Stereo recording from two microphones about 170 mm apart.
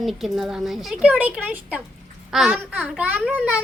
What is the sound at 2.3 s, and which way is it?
A woman's voice, centre (ahead or behind).